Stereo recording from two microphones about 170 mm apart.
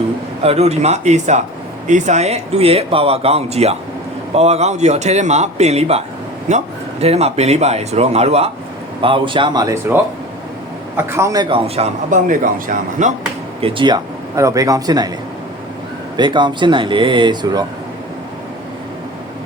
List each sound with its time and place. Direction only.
0.4 s a man's voice: 40° right (ahead or behind)
7.0 s a man's voice: 40° right (ahead or behind)
13.6 s a man's voice: 30° right (ahead or behind)
16.1 s a man's voice: 25° right (ahead or behind)